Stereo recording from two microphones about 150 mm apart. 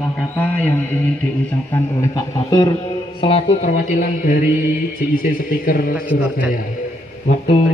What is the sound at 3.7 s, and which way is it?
A man's voice, 65° left (ahead or behind).